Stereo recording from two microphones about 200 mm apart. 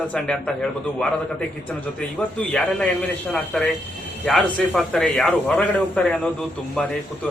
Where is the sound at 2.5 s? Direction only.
5° left (ahead or behind).